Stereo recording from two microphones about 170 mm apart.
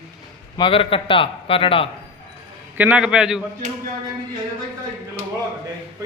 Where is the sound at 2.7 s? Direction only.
10° right (ahead or behind).